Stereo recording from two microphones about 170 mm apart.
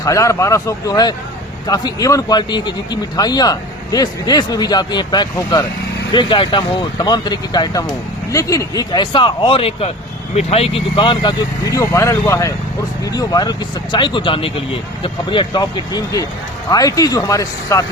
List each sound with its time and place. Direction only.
0.0 s speech: 20° left (ahead or behind)